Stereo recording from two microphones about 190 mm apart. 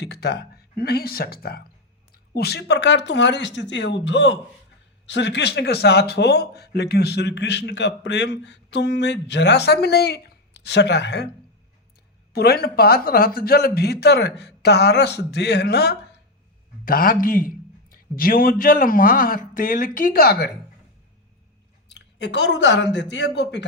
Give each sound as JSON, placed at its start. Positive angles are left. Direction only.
{"t": 0.0, "sound": "speech", "side_deg": 60}
{"t": 12.3, "sound": "a man's voice", "side_deg": 55}
{"t": 21.8, "sound": "speech", "side_deg": 65}